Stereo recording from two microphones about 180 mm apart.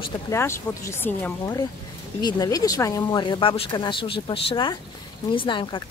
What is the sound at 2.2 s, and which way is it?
Speech, 20° left (ahead or behind).